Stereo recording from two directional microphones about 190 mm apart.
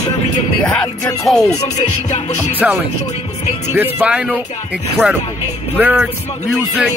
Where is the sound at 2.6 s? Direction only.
10° right (ahead or behind).